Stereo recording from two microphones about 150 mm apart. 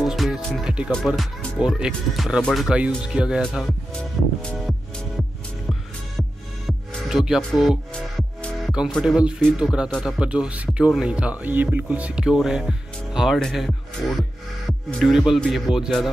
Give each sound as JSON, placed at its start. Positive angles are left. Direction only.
{"t": 0.0, "sound": "music", "side_deg": 0}
{"t": 0.9, "sound": "speech", "side_deg": 0}
{"t": 4.4, "sound": "music", "side_deg": 5}
{"t": 6.9, "sound": "speech", "side_deg": 0}